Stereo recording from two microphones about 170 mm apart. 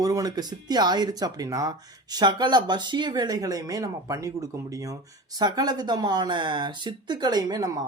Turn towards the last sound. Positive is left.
turn(degrees=-20)  # may be behind; listen again after turning